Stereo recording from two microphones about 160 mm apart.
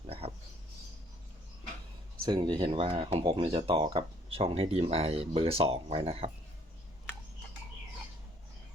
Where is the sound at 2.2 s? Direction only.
25° right (ahead or behind).